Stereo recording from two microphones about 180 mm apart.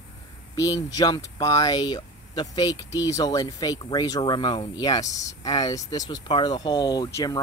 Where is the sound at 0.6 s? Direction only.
20° left (ahead or behind).